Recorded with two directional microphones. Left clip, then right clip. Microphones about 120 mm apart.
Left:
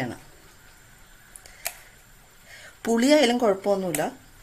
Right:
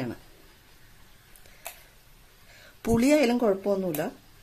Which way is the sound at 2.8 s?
35° right (ahead or behind).